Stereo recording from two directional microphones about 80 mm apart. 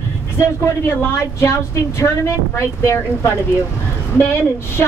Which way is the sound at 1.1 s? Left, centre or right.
Left.